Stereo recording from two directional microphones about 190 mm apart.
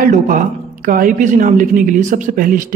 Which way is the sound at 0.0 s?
45° right (ahead or behind).